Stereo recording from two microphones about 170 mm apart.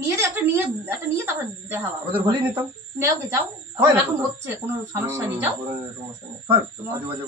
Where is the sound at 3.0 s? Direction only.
15° right (ahead or behind).